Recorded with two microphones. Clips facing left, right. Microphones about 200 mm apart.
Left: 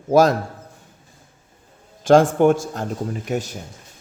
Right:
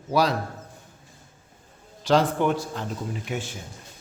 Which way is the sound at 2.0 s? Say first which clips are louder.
Left 8 dB; 50° left (ahead or behind).